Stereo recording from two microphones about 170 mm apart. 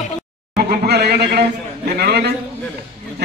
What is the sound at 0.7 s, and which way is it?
A man's voice, 70° right (ahead or behind).